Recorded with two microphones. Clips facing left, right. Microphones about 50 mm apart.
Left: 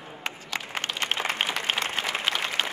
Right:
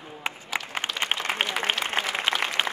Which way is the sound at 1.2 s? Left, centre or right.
Centre.